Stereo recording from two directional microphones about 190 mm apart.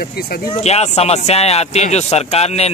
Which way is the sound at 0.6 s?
35° left (ahead or behind).